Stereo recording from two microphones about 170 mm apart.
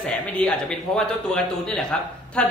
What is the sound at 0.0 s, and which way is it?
A man's voice, 5° left (ahead or behind).